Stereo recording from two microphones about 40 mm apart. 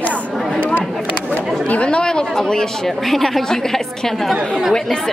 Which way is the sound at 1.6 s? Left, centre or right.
Left.